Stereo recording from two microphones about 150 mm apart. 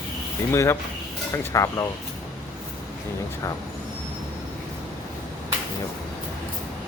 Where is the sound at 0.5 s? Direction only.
20° left (ahead or behind).